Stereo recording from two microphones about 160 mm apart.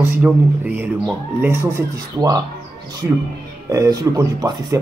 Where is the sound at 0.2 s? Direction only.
10° right (ahead or behind).